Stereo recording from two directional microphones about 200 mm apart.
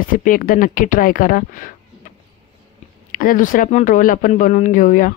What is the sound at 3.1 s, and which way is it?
Speech, 45° left (ahead or behind).